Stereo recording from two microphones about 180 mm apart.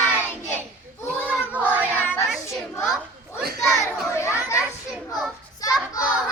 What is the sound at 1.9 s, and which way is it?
Child singing, 10° left (ahead or behind).